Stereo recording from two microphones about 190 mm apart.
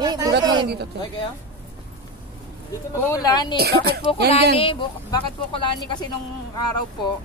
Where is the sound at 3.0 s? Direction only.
20° left (ahead or behind).